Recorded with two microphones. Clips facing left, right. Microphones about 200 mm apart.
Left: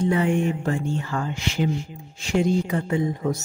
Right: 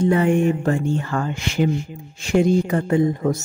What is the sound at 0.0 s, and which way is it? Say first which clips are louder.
Speech: right 4 dB; 50° right (ahead or behind).